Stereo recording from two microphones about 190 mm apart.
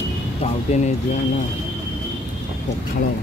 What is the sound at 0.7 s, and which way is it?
Speech, 35° left (ahead or behind).